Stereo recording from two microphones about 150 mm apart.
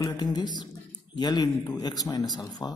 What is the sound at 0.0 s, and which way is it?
Speech, 25° left (ahead or behind).